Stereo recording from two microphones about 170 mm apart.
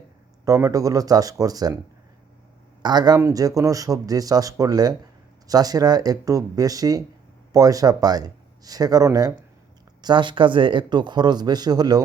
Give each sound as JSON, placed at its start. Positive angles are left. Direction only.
{"t": 0.4, "sound": "a man's voice", "side_deg": -20}
{"t": 2.8, "sound": "a man's voice", "side_deg": -25}